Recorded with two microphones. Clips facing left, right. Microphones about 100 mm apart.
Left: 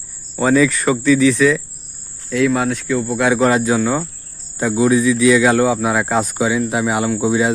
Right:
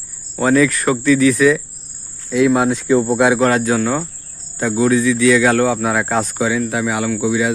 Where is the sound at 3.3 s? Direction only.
Centre (ahead or behind).